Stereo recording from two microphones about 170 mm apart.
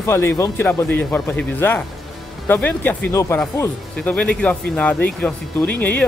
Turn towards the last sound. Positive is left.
turn(degrees=10)  # may be behind; listen again after turning